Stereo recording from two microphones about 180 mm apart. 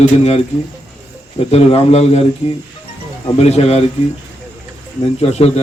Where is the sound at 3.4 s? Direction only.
35° left (ahead or behind).